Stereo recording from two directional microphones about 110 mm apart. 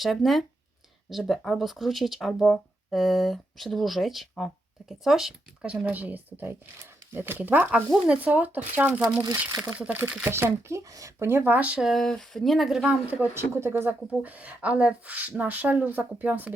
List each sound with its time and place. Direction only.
0.0 s speech: centre (ahead or behind)
13.3 s speech: 25° right (ahead or behind)